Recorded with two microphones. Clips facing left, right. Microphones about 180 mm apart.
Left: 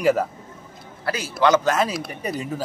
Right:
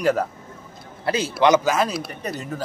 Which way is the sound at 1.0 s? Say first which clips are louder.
Right 2 dB; 20° right (ahead or behind).